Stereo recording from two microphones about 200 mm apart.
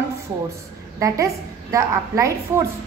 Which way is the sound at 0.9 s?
15° right (ahead or behind).